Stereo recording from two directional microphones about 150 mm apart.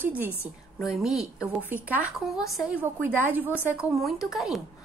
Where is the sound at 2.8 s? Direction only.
15° right (ahead or behind).